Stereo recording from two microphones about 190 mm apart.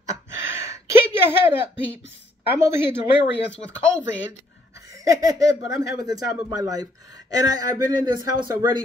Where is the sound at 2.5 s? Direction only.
15° right (ahead or behind).